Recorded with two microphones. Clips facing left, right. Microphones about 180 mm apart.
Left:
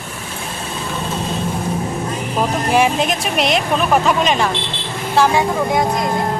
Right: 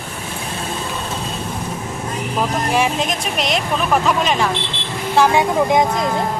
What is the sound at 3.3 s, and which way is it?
Speech, centre (ahead or behind).